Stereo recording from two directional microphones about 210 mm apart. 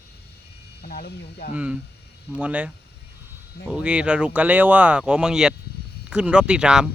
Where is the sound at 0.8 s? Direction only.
50° left (ahead or behind).